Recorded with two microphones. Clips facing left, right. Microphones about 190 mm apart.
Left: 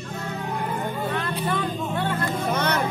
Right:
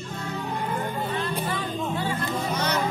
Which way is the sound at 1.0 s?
55° left (ahead or behind).